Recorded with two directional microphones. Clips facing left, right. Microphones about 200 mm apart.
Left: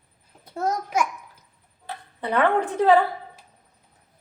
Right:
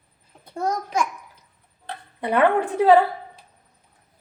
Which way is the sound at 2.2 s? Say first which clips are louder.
Right 2 dB; 15° right (ahead or behind).